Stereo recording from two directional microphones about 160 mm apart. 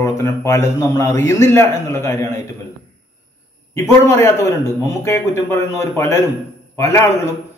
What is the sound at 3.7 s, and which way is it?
A man's voice, 15° left (ahead or behind).